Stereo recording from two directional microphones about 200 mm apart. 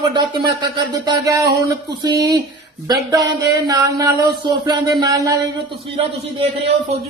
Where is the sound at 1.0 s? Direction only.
15° right (ahead or behind).